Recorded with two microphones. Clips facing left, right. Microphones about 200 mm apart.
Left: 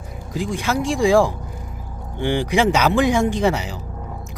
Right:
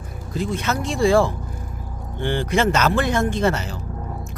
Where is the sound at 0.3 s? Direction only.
15° left (ahead or behind).